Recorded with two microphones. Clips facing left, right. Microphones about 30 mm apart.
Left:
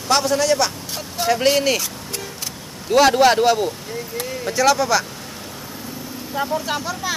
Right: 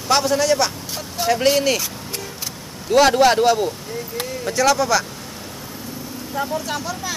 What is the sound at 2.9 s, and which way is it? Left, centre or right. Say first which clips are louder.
Speech: even; centre.